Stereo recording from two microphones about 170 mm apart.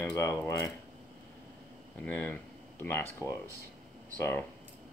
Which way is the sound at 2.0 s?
10° left (ahead or behind).